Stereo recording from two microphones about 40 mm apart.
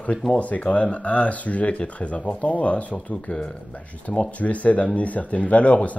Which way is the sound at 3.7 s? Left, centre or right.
Left.